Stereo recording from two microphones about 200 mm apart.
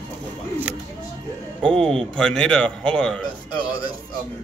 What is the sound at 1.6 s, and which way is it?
Speech, 5° left (ahead or behind).